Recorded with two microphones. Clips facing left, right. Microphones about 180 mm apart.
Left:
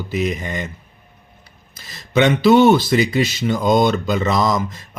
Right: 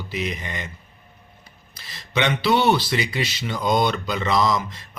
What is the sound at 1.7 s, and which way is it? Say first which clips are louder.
Speech: left 8 dB; 45° left (ahead or behind).